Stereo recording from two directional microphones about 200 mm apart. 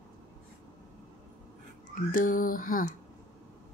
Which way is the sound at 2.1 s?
45° left (ahead or behind).